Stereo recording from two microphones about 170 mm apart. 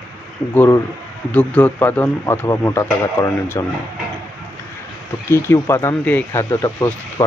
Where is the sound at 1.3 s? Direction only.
10° left (ahead or behind).